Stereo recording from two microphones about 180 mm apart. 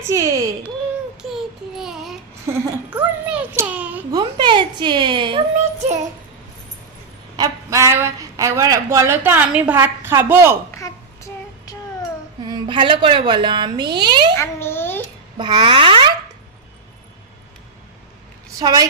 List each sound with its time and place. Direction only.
0.1 s speech: 15° right (ahead or behind)
1.3 s a sound: centre (ahead or behind)
4.1 s speech: 25° right (ahead or behind)
7.3 s a woman's voice: 20° right (ahead or behind)
10.7 s child singing: 15° left (ahead or behind)
12.5 s a woman's voice: 25° right (ahead or behind)
14.3 s a sound: 15° left (ahead or behind)
15.4 s a woman's voice: 25° right (ahead or behind)
18.6 s a woman's voice: 20° right (ahead or behind)